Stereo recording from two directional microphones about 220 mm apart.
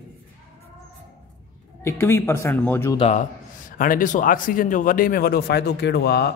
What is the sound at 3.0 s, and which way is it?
A man's voice, 35° left (ahead or behind).